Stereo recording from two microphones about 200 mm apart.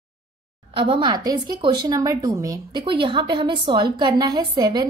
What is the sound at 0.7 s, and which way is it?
Speech, 25° right (ahead or behind).